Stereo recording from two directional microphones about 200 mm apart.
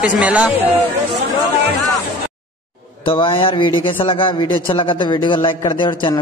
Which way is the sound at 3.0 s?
25° left (ahead or behind).